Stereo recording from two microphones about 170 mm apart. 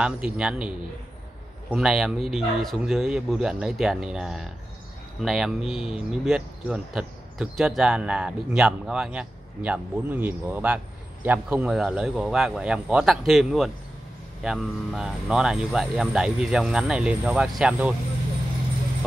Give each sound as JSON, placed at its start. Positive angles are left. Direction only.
{"t": 0.0, "sound": "speech", "side_deg": -5}
{"t": 1.7, "sound": "speech", "side_deg": -5}
{"t": 5.7, "sound": "speech", "side_deg": 35}
{"t": 6.2, "sound": "speech", "side_deg": -5}